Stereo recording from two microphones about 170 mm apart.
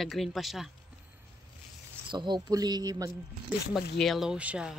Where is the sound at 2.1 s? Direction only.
25° right (ahead or behind).